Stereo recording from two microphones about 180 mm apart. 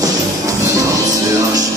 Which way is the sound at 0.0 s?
20° right (ahead or behind).